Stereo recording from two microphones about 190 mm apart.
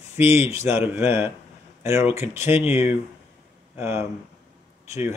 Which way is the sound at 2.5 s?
30° left (ahead or behind).